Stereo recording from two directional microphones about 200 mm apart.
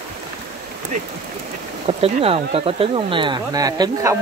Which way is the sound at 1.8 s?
30° right (ahead or behind).